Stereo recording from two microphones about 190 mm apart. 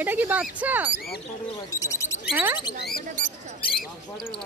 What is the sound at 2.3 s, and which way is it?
Speech, 10° right (ahead or behind).